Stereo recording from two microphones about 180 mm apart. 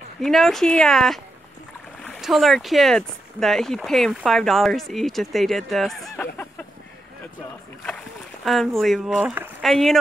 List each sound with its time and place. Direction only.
0.2 s speech: centre (ahead or behind)
8.5 s speech: centre (ahead or behind)
9.6 s speech: centre (ahead or behind)